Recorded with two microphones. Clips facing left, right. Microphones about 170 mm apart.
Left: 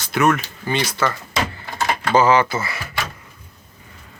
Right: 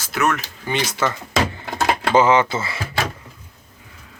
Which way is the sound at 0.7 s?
20° right (ahead or behind).